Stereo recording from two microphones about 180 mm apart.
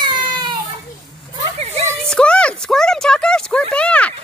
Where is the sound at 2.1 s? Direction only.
5° left (ahead or behind).